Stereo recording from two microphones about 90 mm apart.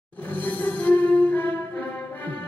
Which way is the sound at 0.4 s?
20° left (ahead or behind).